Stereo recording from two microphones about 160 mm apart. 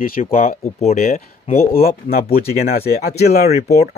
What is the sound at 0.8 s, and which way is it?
Speech, 45° left (ahead or behind).